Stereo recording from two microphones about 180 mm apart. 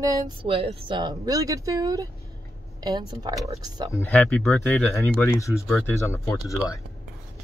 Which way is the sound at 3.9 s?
15° left (ahead or behind).